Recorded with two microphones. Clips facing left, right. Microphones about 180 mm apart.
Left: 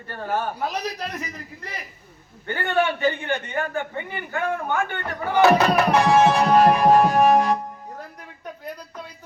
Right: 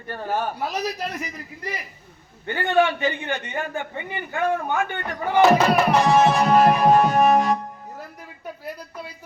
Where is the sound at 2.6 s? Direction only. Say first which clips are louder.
Right 3 dB; 20° right (ahead or behind).